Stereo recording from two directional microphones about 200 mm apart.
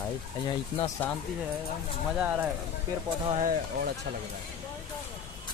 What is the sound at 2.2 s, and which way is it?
Speech, 10° right (ahead or behind).